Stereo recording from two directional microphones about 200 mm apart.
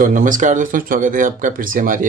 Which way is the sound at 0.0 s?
40° right (ahead or behind).